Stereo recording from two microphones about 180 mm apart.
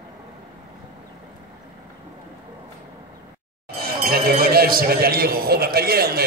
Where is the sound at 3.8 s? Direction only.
55° right (ahead or behind).